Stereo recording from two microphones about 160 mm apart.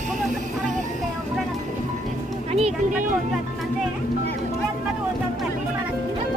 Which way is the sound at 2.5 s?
40° right (ahead or behind).